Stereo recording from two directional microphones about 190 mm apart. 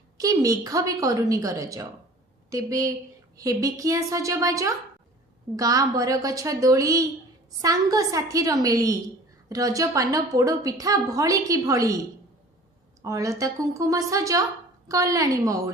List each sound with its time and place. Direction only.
0.2 s a woman's voice: 20° right (ahead or behind)
13.1 s a woman's voice: 15° right (ahead or behind)